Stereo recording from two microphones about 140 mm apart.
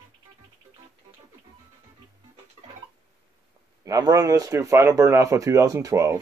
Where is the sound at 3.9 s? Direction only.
25° right (ahead or behind).